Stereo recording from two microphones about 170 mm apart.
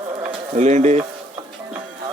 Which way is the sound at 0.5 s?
40° right (ahead or behind).